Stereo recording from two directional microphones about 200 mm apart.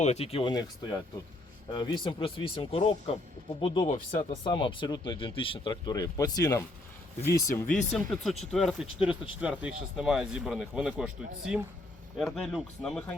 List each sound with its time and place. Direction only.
0.0 s speech: 30° left (ahead or behind); by 13.1 s 5° left (ahead or behind)